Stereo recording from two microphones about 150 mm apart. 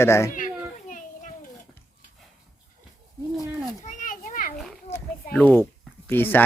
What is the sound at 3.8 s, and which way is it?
Children playing, 60° left (ahead or behind).